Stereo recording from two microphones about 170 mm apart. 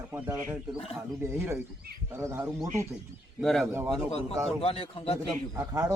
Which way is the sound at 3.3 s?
Centre (ahead or behind).